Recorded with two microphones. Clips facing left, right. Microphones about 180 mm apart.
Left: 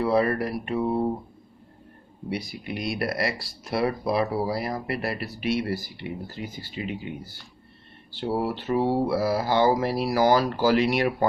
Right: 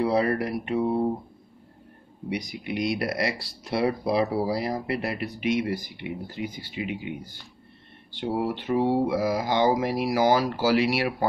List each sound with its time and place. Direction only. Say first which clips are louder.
0.0 s speech: left 1 dB; 20° right (ahead or behind)
2.2 s speech: right 1 dB; 15° right (ahead or behind)
8.2 s speech: even; 15° right (ahead or behind)